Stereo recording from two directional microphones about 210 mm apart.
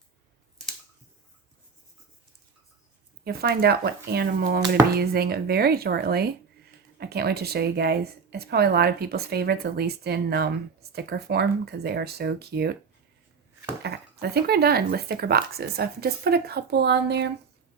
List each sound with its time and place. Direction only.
3.2 s a woman's voice: 50° right (ahead or behind)
13.8 s a woman's voice: 50° right (ahead or behind)